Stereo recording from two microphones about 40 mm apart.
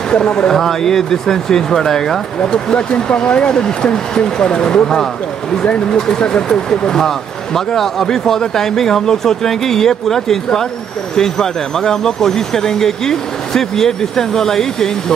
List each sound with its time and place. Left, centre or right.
0.1 s speech: left
2.4 s speech: left